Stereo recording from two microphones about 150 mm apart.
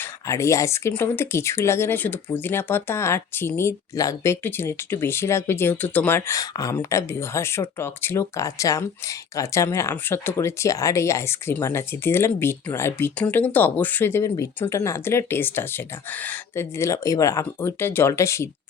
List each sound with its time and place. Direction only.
0.0 s speech: 20° left (ahead or behind)